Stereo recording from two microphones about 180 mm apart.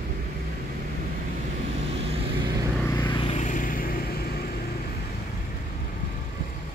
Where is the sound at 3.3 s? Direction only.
45° left (ahead or behind).